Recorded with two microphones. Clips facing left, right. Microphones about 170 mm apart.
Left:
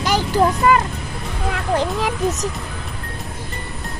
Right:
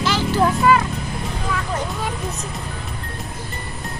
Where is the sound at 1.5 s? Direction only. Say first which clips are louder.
Left 6 dB; 70° left (ahead or behind).